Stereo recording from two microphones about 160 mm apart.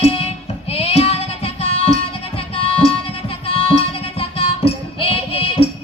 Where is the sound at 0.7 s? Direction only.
40° left (ahead or behind).